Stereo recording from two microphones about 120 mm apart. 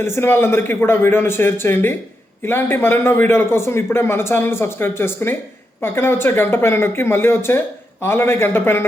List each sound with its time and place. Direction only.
0.0 s a man's voice: 20° left (ahead or behind)